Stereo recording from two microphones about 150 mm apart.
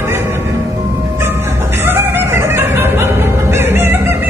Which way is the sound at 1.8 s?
15° right (ahead or behind).